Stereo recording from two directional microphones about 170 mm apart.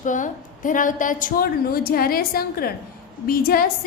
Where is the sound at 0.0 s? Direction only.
50° left (ahead or behind).